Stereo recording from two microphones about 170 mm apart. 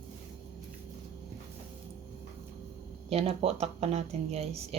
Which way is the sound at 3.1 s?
35° right (ahead or behind).